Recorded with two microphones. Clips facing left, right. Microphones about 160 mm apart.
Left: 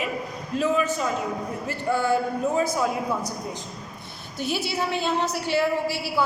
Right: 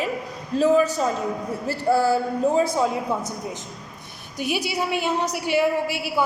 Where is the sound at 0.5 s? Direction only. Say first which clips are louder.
Right 5 dB; 35° right (ahead or behind).